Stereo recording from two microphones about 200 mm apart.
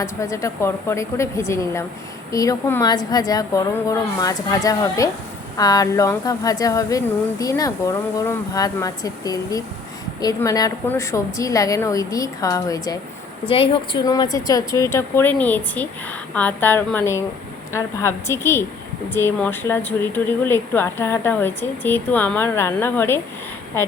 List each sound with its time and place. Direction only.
0.0 s speech: 15° left (ahead or behind)